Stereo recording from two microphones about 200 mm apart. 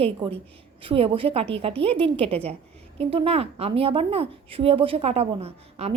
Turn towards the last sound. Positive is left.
turn(degrees=-30)  # may be behind; listen again after turning